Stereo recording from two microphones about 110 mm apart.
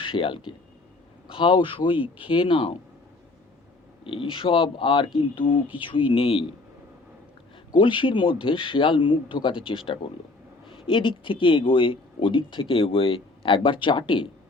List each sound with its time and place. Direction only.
0.0 s speech: 50° left (ahead or behind)
4.0 s speech: 55° left (ahead or behind)
7.7 s speech: 50° left (ahead or behind)